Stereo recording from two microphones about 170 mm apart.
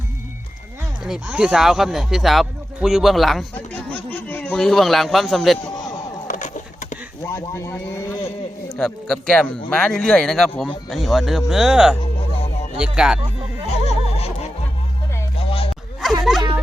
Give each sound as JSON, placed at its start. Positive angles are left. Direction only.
{"t": 1.0, "sound": "speech", "side_deg": -5}
{"t": 6.2, "sound": "a sound", "side_deg": 50}
{"t": 7.3, "sound": "speech", "side_deg": 15}
{"t": 8.7, "sound": "speech", "side_deg": 5}
{"t": 13.7, "sound": "a sound", "side_deg": 35}
{"t": 15.4, "sound": "music", "side_deg": 35}